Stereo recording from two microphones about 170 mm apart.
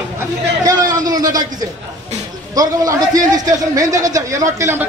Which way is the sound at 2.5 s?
20° right (ahead or behind).